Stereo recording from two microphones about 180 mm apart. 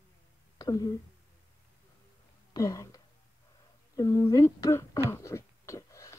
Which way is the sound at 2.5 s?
15° left (ahead or behind).